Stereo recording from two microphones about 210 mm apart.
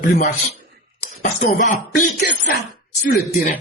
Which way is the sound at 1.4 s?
40° left (ahead or behind).